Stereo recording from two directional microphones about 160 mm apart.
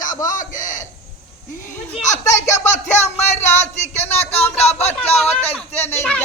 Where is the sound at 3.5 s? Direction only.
45° left (ahead or behind).